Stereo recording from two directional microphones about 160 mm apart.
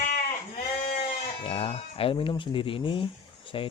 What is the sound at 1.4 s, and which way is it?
Speech, 35° left (ahead or behind).